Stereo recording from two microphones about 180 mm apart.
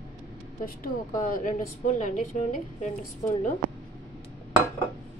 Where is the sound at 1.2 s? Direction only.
45° left (ahead or behind).